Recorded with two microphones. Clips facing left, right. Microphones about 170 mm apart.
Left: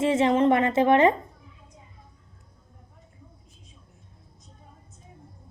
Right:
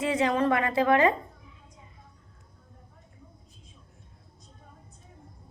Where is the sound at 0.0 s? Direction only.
25° left (ahead or behind).